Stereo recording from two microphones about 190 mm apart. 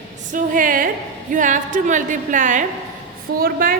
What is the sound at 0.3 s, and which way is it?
A woman's voice, 45° right (ahead or behind).